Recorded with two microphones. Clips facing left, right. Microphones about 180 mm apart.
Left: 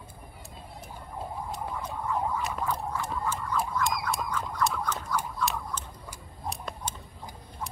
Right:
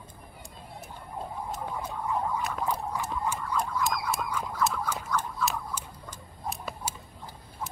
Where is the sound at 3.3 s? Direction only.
Centre (ahead or behind).